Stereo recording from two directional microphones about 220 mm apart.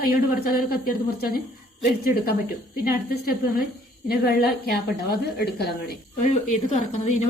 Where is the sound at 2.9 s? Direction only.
45° left (ahead or behind).